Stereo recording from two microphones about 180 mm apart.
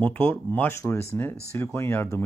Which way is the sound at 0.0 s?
10° left (ahead or behind).